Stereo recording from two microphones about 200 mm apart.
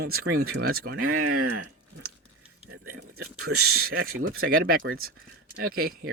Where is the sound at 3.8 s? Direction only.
50° right (ahead or behind).